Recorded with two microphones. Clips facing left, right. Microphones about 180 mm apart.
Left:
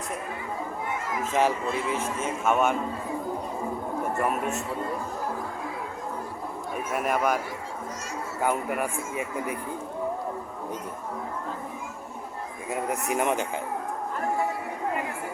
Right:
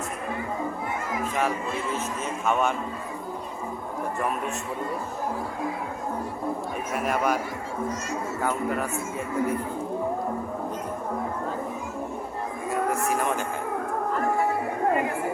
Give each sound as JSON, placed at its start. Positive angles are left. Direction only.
{"t": 1.3, "sound": "a man's voice", "side_deg": 25}
{"t": 1.9, "sound": "a man's voice", "side_deg": 10}
{"t": 6.9, "sound": "a man's voice", "side_deg": 0}
{"t": 8.4, "sound": "a man's voice", "side_deg": 10}
{"t": 12.9, "sound": "speech", "side_deg": 20}